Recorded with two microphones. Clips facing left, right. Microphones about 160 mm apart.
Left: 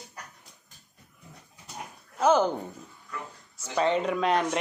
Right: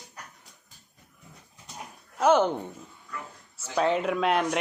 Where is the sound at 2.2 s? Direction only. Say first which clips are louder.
Right 1 dB; 5° right (ahead or behind).